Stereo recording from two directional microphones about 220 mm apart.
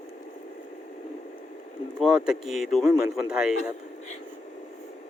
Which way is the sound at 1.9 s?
5° right (ahead or behind).